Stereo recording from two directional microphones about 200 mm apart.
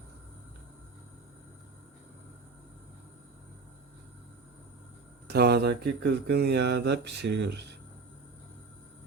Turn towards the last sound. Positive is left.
turn(degrees=-60)  # may be behind; listen again after turning